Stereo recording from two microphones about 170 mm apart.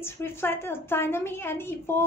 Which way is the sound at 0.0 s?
15° left (ahead or behind).